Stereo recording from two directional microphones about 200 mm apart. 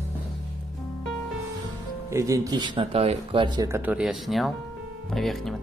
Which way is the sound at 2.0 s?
15° right (ahead or behind).